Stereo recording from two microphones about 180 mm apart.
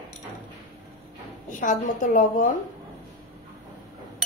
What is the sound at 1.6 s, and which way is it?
Speech, 45° left (ahead or behind).